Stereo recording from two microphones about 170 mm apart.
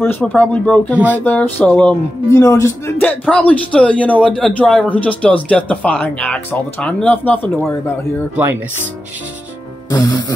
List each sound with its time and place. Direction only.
0.2 s a man's voice: 10° left (ahead or behind)
9.8 s speech: 25° left (ahead or behind)